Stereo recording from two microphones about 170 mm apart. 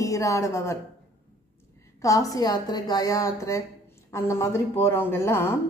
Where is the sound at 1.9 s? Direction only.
20° left (ahead or behind).